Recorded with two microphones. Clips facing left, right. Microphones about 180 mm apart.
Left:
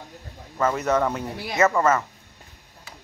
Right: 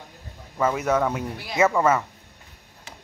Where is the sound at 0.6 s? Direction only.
10° right (ahead or behind).